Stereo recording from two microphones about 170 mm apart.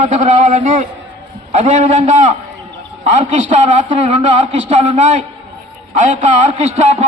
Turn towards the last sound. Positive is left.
turn(degrees=-40)  # may be behind; listen again after turning